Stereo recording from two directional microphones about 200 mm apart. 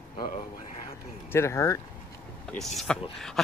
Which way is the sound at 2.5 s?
Centre (ahead or behind).